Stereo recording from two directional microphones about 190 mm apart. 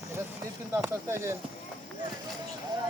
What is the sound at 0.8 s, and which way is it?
Speech, 15° right (ahead or behind).